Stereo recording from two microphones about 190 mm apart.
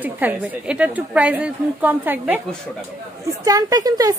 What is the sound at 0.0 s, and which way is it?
A woman's voice, 10° right (ahead or behind).